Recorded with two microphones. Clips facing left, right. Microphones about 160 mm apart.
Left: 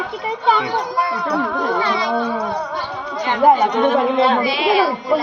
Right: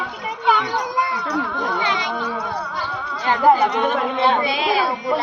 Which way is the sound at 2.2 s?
50° left (ahead or behind).